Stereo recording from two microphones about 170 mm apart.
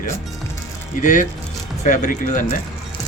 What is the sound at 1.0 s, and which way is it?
Speech, 50° left (ahead or behind).